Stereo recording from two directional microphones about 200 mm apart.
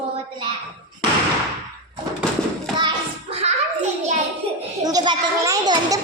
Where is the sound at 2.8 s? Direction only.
25° right (ahead or behind).